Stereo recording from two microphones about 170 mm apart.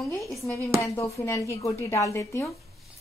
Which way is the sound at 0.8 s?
15° left (ahead or behind).